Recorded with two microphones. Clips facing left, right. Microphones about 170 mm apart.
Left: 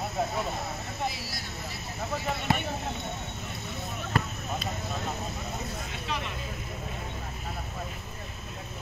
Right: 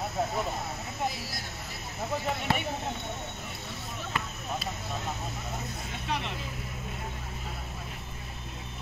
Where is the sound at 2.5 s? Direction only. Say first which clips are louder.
Left 2 dB; 15° left (ahead or behind).